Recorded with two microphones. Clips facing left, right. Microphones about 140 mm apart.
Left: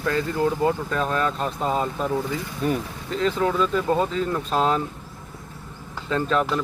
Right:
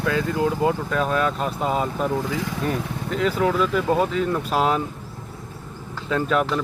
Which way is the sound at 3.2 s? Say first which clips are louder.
Right 1 dB; 10° right (ahead or behind).